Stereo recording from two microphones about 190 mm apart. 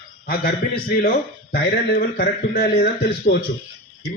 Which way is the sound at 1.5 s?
55° left (ahead or behind).